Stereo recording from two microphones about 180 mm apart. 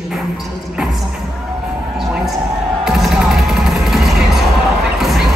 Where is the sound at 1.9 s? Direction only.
Centre (ahead or behind).